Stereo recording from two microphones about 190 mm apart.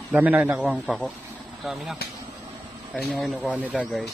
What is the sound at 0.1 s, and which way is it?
A man's voice, 10° right (ahead or behind).